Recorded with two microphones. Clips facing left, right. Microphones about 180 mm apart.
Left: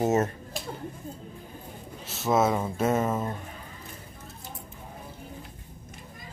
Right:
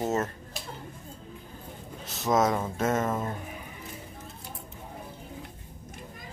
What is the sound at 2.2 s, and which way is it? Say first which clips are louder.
Speech: left 1 dB; 5° left (ahead or behind).